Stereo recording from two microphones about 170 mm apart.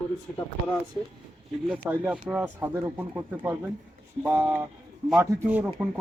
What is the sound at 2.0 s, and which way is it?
Speech, 5° right (ahead or behind).